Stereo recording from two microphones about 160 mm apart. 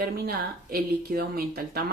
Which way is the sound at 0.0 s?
70° right (ahead or behind).